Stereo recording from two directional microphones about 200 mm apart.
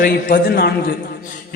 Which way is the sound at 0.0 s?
50° left (ahead or behind).